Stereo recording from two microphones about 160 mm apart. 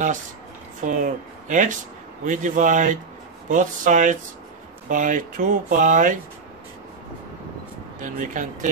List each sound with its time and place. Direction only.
0.7 s speech: 55° right (ahead or behind)
8.0 s speech: 55° right (ahead or behind)